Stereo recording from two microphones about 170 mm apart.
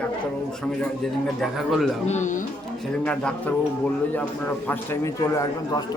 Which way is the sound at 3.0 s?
5° left (ahead or behind).